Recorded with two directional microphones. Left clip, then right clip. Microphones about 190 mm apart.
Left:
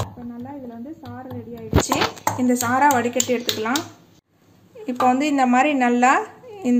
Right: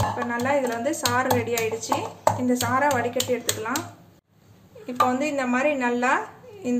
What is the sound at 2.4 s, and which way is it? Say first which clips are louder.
Speech: left 9 dB; 30° left (ahead or behind).